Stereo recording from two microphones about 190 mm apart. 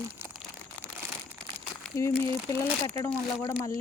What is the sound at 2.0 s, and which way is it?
Speech, 15° left (ahead or behind).